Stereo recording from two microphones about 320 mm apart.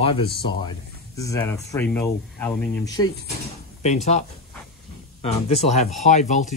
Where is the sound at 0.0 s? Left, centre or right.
Centre.